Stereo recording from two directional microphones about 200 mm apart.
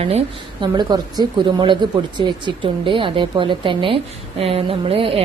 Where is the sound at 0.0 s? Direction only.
30° right (ahead or behind).